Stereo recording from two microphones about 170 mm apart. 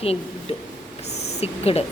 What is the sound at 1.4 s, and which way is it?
Speech, 35° left (ahead or behind).